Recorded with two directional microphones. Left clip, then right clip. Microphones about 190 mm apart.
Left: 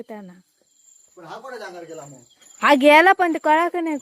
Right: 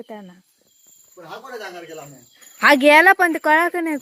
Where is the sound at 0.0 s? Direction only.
10° left (ahead or behind).